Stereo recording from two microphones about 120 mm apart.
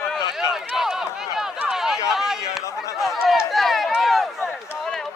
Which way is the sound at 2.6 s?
25° left (ahead or behind).